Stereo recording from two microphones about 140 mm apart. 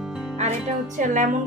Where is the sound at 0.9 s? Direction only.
65° right (ahead or behind).